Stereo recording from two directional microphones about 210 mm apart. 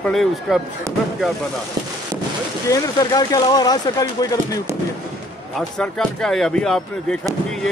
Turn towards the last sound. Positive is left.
turn(degrees=5)  # may be behind; listen again after turning